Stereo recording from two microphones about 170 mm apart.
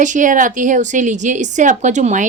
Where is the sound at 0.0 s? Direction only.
50° right (ahead or behind).